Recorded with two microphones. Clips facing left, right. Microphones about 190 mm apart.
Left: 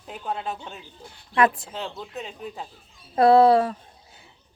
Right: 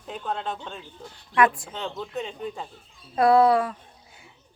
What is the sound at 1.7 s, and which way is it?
Speech, 5° left (ahead or behind).